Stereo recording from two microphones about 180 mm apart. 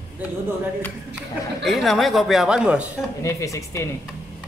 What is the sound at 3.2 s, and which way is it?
Speech, 15° left (ahead or behind).